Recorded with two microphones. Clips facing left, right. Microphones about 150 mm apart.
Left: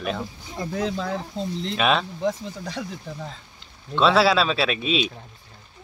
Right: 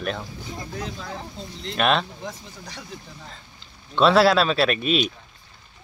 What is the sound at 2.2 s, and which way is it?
Speech, 65° left (ahead or behind).